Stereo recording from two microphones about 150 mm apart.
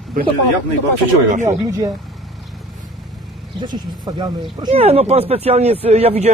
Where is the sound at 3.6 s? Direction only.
30° right (ahead or behind).